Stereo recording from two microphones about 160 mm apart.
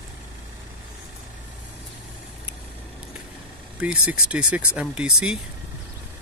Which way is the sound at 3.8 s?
5° right (ahead or behind).